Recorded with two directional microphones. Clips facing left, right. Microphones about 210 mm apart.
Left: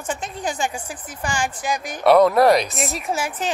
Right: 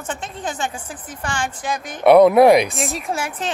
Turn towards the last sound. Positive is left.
turn(degrees=5)  # may be behind; listen again after turning